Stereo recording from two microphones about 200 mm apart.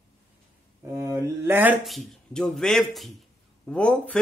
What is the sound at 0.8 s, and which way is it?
Speech, 15° right (ahead or behind).